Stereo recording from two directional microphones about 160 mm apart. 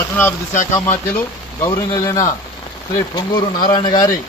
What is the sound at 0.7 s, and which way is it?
Speech, 10° left (ahead or behind).